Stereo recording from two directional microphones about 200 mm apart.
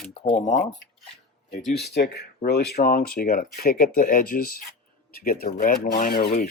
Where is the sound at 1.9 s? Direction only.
55° left (ahead or behind).